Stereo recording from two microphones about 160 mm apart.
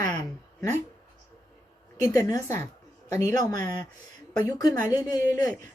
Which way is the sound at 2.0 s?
20° left (ahead or behind).